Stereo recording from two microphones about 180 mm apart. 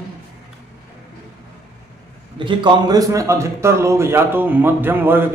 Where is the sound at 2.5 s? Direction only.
25° right (ahead or behind).